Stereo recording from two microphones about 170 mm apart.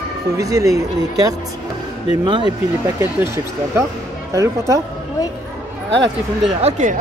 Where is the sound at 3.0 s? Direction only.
15° right (ahead or behind).